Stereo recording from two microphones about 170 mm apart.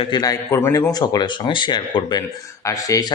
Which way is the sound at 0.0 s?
25° left (ahead or behind).